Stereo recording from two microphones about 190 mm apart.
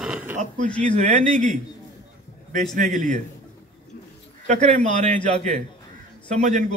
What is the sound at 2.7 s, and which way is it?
Speech, 45° right (ahead or behind).